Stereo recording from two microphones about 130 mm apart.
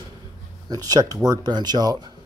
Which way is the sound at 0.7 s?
30° right (ahead or behind).